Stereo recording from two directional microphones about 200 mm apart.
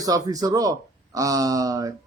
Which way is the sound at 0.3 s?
15° right (ahead or behind).